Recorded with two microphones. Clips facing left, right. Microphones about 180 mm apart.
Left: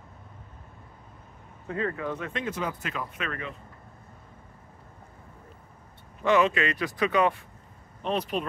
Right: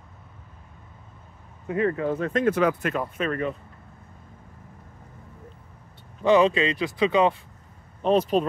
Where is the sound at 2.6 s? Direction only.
70° right (ahead or behind).